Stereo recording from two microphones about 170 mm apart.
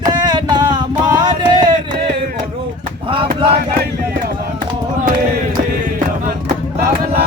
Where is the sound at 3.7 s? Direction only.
60° right (ahead or behind).